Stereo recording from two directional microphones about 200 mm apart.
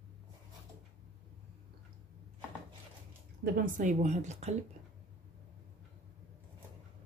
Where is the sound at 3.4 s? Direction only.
40° right (ahead or behind).